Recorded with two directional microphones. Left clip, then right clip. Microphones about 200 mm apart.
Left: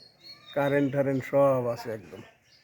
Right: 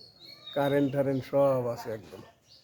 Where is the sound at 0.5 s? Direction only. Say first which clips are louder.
Left 1 dB; 10° left (ahead or behind).